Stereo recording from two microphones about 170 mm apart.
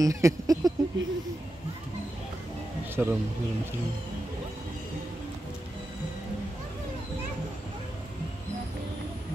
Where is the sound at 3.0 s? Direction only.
10° right (ahead or behind).